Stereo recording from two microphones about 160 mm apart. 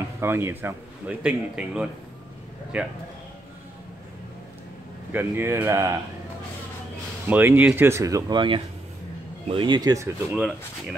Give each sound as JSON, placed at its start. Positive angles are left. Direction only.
{"t": 0.2, "sound": "a man's voice", "side_deg": -15}
{"t": 5.1, "sound": "a man's voice", "side_deg": -15}
{"t": 7.2, "sound": "a man's voice", "side_deg": -10}